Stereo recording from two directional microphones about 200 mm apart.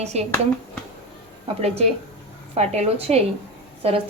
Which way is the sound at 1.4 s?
30° right (ahead or behind).